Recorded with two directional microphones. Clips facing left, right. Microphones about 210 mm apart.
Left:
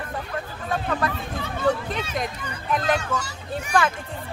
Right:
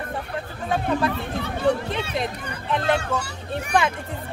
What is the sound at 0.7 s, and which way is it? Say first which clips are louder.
Speech: right 3 dB; 25° right (ahead or behind).